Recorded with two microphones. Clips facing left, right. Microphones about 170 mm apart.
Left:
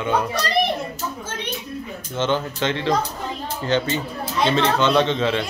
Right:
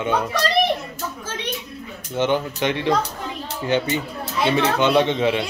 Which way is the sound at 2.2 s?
15° right (ahead or behind).